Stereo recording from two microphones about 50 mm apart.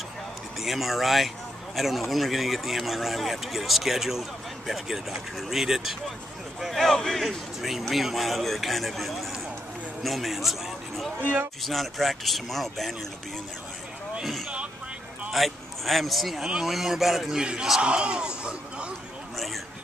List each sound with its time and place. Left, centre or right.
0.6 s a man's voice: centre
6.6 s a man's voice: centre
7.2 s a man's voice: centre
14.2 s a man's voice: centre
17.8 s speech: right
19.3 s a sound: centre